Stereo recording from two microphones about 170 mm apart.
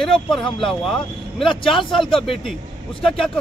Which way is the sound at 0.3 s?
30° left (ahead or behind).